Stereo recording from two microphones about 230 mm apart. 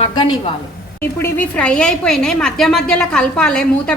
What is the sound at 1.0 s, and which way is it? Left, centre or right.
A woman's voice, centre.